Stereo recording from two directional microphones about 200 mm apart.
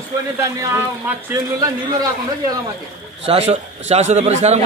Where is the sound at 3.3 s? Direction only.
30° right (ahead or behind).